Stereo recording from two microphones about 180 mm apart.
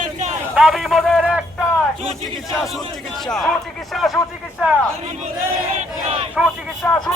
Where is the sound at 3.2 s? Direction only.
Centre (ahead or behind).